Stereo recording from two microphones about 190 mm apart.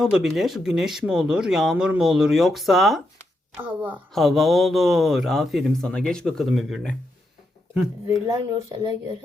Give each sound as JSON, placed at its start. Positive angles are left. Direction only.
{"t": 0.0, "sound": "a woman's voice", "side_deg": 0}
{"t": 8.3, "sound": "speech", "side_deg": -20}